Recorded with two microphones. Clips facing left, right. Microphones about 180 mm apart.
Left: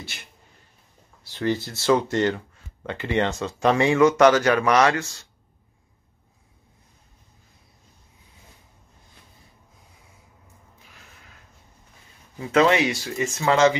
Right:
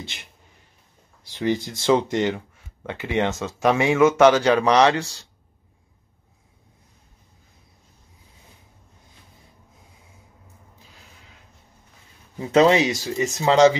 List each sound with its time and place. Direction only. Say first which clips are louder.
1.3 s speech: right 1 dB; 15° right (ahead or behind)
4.0 s speech: right 2 dB; 20° right (ahead or behind)
4.6 s speech: right 3 dB; 30° right (ahead or behind)
12.4 s speech: right 3 dB; 30° right (ahead or behind)